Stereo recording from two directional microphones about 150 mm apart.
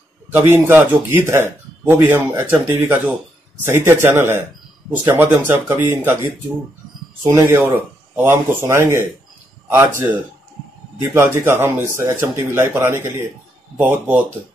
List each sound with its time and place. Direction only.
0.3 s speech: 15° right (ahead or behind)